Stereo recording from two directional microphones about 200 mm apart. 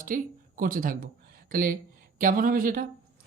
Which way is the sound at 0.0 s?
45° right (ahead or behind).